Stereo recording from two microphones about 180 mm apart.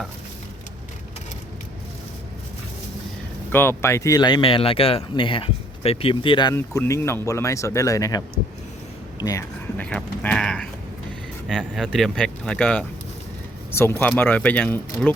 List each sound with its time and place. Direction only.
3.5 s speech: 10° left (ahead or behind); by 6.5 s 30° left (ahead or behind)
6.5 s speech: 15° left (ahead or behind)
9.7 s speech: 5° left (ahead or behind)